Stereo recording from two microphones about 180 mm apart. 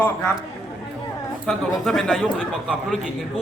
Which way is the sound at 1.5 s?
Centre (ahead or behind).